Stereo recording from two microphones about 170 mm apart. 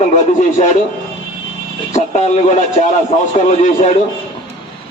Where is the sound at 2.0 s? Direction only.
40° left (ahead or behind).